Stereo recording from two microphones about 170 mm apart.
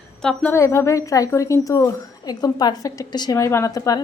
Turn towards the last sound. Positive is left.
turn(degrees=20)  # may be behind; listen again after turning